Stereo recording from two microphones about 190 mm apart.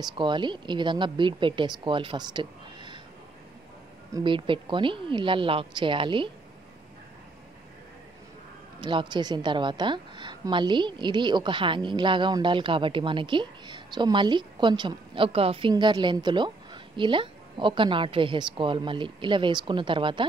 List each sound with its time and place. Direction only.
0.0 s a woman's voice: 25° right (ahead or behind)
4.1 s a woman's voice: 25° right (ahead or behind)
8.8 s a woman's voice: 25° right (ahead or behind)